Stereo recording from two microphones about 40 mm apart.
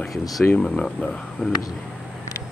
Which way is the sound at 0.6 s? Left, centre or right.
Centre.